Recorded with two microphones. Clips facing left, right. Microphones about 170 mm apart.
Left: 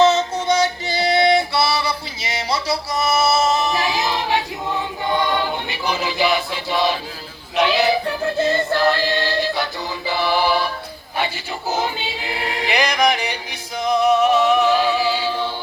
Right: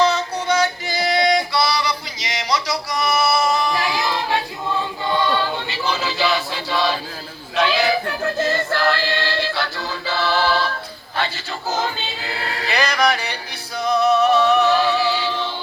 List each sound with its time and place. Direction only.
0.0 s music: 25° left (ahead or behind)
7.5 s a sound: 20° left (ahead or behind)
8.4 s music: 20° left (ahead or behind)
11.7 s choir: 15° left (ahead or behind)
13.8 s music: 10° left (ahead or behind)